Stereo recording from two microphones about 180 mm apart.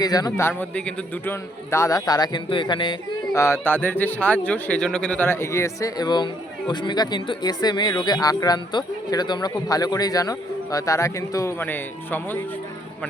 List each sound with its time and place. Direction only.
0.0 s a man's voice: 20° left (ahead or behind)